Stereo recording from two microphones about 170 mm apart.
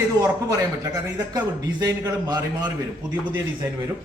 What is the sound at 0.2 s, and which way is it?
Speech, 20° right (ahead or behind).